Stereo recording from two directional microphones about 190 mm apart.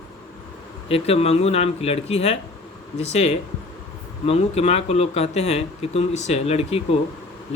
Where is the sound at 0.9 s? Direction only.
30° left (ahead or behind).